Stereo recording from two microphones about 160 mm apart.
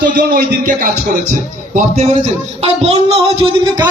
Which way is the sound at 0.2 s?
80° right.